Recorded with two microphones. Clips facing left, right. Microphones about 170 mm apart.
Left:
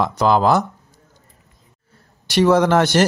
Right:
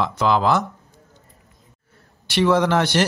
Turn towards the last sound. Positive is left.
turn(degrees=45)  # may be behind; listen again after turning